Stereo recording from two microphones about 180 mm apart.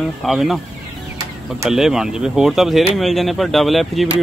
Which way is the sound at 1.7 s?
5° right (ahead or behind).